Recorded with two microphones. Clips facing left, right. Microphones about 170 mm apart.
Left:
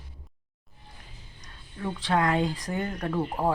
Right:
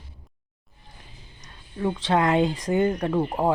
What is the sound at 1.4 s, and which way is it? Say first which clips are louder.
Speech: right 8 dB; 25° right (ahead or behind).